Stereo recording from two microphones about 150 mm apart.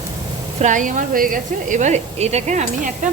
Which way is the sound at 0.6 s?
60° right (ahead or behind).